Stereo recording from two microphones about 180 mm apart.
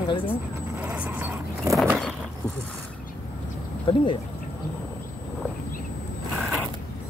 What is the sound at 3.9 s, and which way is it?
Speech, 25° left (ahead or behind).